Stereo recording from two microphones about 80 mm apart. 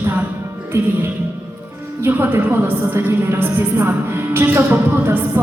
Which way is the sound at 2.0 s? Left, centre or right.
Right.